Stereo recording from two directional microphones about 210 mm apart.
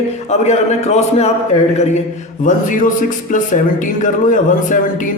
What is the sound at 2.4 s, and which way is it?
Speech, 40° left (ahead or behind).